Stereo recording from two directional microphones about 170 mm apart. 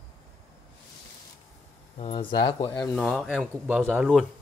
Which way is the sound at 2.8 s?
5° left (ahead or behind).